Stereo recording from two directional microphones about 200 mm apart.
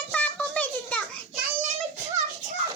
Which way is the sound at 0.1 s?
5° left (ahead or behind).